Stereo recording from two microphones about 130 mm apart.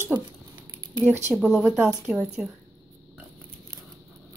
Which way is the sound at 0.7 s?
25° right (ahead or behind).